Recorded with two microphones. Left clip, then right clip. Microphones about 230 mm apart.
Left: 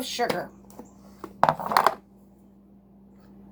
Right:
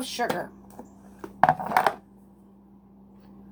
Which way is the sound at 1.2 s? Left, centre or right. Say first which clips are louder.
Right 1 dB; centre.